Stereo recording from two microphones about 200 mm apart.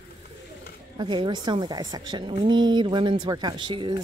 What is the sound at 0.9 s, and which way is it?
Speech, 25° right (ahead or behind).